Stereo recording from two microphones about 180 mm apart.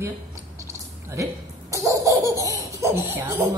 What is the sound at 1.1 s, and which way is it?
Speech, 15° right (ahead or behind).